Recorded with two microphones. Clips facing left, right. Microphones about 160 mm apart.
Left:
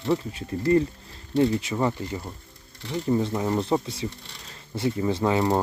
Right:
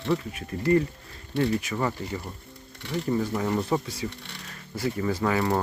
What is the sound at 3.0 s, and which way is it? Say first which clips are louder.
Speech: left 3 dB; 25° left (ahead or behind).